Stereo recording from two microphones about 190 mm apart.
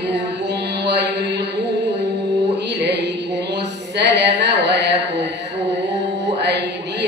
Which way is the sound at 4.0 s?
65° right (ahead or behind).